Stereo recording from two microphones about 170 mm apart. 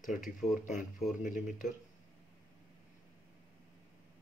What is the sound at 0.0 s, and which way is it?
Speech, 50° left (ahead or behind).